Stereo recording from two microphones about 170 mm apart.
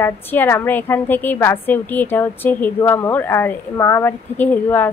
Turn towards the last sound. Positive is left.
turn(degrees=10)  # may be behind; listen again after turning